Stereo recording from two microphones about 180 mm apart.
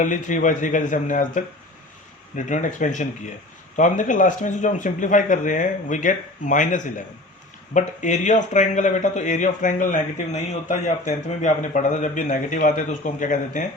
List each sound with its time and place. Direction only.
0.0 s speech: 45° left (ahead or behind)